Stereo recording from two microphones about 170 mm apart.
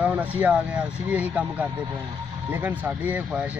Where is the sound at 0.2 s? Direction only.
10° right (ahead or behind).